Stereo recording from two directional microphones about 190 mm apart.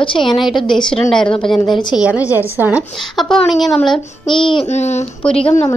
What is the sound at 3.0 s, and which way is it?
A woman's voice, centre (ahead or behind).